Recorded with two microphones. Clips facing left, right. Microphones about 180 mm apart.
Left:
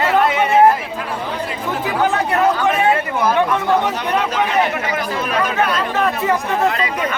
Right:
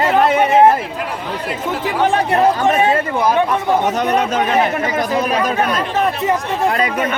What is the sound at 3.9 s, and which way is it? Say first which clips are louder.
A man's voice: right 3 dB; 45° right (ahead or behind).